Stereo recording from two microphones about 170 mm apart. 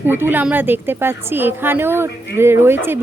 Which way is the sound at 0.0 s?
10° right (ahead or behind).